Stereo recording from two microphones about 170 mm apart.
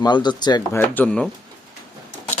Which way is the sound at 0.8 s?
10° left (ahead or behind).